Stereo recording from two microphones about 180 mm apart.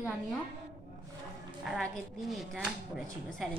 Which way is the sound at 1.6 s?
Centre (ahead or behind).